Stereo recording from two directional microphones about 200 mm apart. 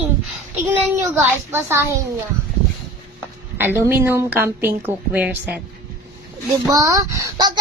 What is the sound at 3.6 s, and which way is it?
A child's voice, 10° right (ahead or behind).